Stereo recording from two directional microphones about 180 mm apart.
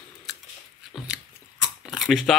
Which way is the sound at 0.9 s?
Centre (ahead or behind).